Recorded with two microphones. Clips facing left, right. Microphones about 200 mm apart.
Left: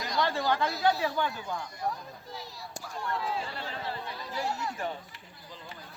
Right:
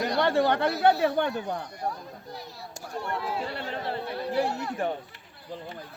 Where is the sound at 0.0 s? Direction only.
65° right (ahead or behind).